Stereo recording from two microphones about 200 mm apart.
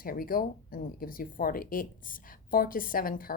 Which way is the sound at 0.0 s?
45° left (ahead or behind).